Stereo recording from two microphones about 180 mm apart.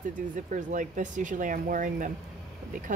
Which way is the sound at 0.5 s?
45° right (ahead or behind).